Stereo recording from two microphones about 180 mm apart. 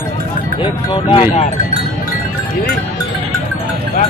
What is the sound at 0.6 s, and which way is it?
Speech, 30° left (ahead or behind).